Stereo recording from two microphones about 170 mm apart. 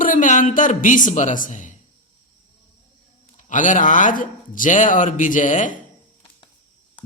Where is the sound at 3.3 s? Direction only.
45° left (ahead or behind).